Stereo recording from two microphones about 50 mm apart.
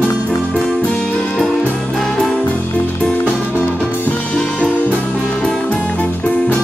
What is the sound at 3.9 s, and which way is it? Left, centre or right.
Music, left.